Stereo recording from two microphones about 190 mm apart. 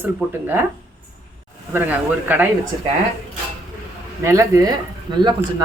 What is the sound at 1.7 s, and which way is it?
Speech, 10° right (ahead or behind).